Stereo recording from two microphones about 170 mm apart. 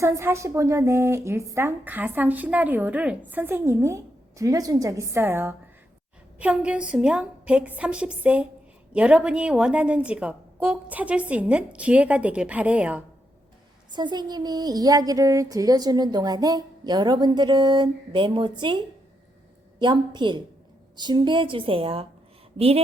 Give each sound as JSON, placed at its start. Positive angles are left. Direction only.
{"t": 0.0, "sound": "a woman's voice", "side_deg": -15}
{"t": 13.9, "sound": "speech", "side_deg": -25}
{"t": 19.8, "sound": "speech", "side_deg": -25}